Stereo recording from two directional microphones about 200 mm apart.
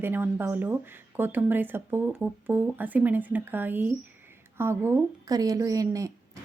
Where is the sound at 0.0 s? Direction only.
10° right (ahead or behind).